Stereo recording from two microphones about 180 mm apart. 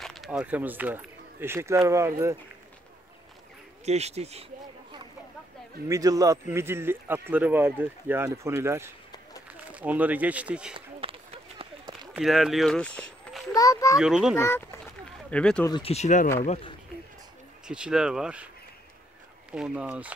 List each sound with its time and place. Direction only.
0.0 s speech: centre (ahead or behind); by 2.3 s 15° right (ahead or behind)
3.8 s speech: 35° right (ahead or behind)
5.9 s speech: 20° right (ahead or behind)
10.7 s run: 30° right (ahead or behind)
12.1 s speech: centre (ahead or behind)
13.5 s speech: 20° left (ahead or behind)
13.9 s speech: 5° right (ahead or behind)
14.3 s speech: 15° left (ahead or behind)
15.7 s speech: 35° left (ahead or behind)
17.6 s speech: 5° right (ahead or behind)
19.5 s speech: 5° right (ahead or behind)